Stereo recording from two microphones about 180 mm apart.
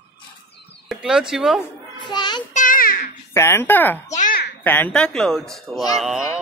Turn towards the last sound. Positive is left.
turn(degrees=0)  # may be behind; listen again after turning